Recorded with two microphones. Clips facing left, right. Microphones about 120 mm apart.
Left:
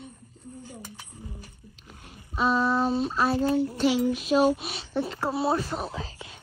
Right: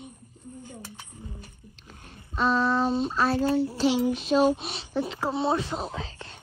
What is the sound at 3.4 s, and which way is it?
Child singing, 30° right (ahead or behind).